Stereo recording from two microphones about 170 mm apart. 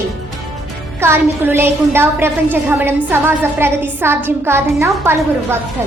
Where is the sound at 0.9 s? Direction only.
15° right (ahead or behind).